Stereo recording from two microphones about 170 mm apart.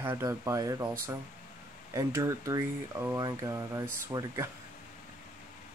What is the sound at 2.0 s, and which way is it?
Speech, 20° right (ahead or behind).